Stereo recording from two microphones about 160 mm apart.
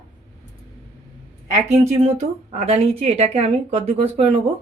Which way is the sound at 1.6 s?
40° right (ahead or behind).